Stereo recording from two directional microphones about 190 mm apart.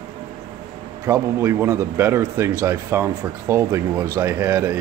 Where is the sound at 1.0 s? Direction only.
15° right (ahead or behind).